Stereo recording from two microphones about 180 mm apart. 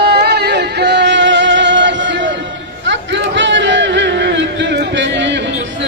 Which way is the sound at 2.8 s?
85° right.